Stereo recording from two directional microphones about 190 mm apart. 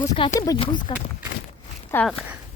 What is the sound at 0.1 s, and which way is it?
Speech, 35° left (ahead or behind).